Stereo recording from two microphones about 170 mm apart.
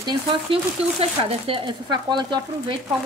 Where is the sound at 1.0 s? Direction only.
35° right (ahead or behind).